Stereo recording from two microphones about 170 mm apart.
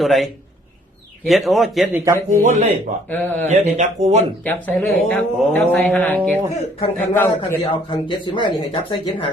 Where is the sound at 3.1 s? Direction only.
10° left (ahead or behind).